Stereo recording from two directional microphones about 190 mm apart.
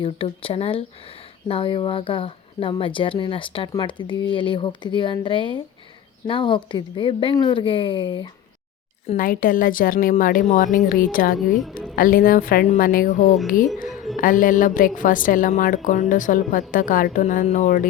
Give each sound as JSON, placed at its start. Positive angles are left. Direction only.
{"t": 0.0, "sound": "speech", "side_deg": 30}
{"t": 9.1, "sound": "a woman's voice", "side_deg": 45}
{"t": 13.8, "sound": "music", "side_deg": 0}
{"t": 14.2, "sound": "a woman's voice", "side_deg": 45}